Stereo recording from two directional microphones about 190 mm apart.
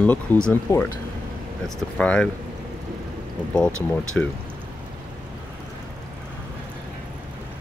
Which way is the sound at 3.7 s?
90° left.